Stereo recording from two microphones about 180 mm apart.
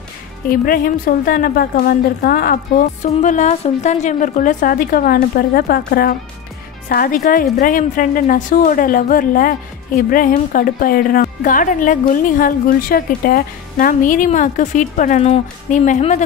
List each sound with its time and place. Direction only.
0.5 s a woman's voice: 50° left (ahead or behind)